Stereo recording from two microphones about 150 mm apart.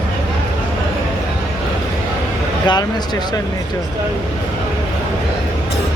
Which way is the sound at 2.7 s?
25° left (ahead or behind).